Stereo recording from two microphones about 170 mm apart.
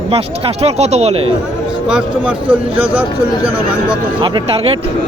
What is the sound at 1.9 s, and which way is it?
A man's voice, 10° right (ahead or behind).